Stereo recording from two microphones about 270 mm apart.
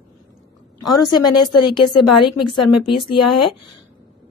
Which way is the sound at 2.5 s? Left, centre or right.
Left.